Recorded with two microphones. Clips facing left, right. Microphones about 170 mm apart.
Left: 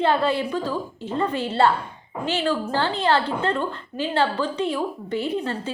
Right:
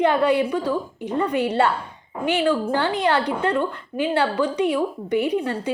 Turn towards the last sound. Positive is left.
turn(degrees=-15)  # may be behind; listen again after turning